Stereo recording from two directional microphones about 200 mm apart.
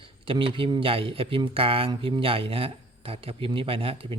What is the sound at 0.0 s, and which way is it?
Speech, 25° right (ahead or behind).